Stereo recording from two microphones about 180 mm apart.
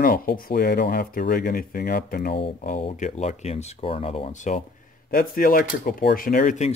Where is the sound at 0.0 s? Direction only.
55° left (ahead or behind).